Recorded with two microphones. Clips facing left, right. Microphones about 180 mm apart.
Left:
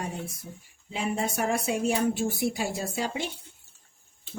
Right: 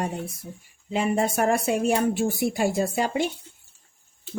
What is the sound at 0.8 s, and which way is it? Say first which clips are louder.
Speech: right 6 dB; 55° right (ahead or behind).